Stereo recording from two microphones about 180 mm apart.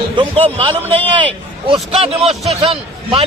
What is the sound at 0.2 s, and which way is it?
A man's voice, 30° right (ahead or behind).